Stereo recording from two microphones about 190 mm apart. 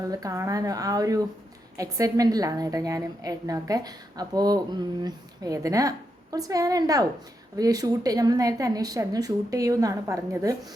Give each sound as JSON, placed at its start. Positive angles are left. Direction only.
{"t": 0.1, "sound": "a woman's voice", "side_deg": -20}